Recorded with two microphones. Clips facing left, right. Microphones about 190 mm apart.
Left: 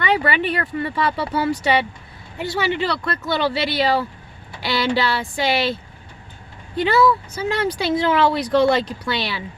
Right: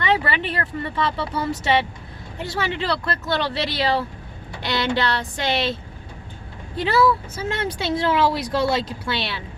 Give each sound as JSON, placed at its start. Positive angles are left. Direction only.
{"t": 0.0, "sound": "speech", "side_deg": 0}
{"t": 6.7, "sound": "speech", "side_deg": 0}